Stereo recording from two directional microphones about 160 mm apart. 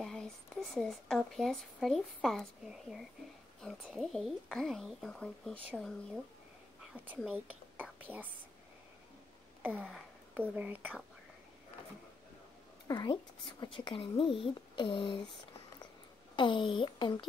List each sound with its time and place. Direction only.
0.0 s a woman's voice: 5° left (ahead or behind)
6.8 s a sound: 5° right (ahead or behind)
7.2 s speech: 10° right (ahead or behind)
9.6 s a sound: 10° right (ahead or behind)
10.3 s speech: 10° right (ahead or behind)
12.8 s speech: 25° left (ahead or behind)
16.3 s speech: 30° left (ahead or behind)